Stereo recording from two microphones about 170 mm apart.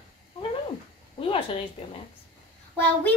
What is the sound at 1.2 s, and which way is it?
Speech, 35° left (ahead or behind).